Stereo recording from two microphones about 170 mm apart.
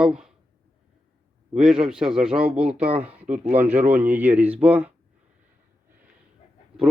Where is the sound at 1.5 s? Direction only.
5° right (ahead or behind).